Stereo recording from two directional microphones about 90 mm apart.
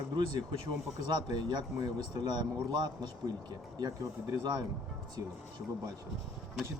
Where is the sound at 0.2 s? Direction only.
50° right (ahead or behind).